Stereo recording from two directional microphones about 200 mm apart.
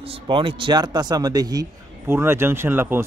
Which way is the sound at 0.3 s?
25° right (ahead or behind).